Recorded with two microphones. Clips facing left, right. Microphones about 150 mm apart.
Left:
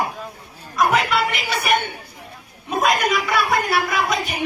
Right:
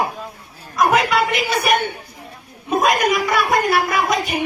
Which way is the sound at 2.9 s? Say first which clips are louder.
Right 2 dB; 45° right (ahead or behind).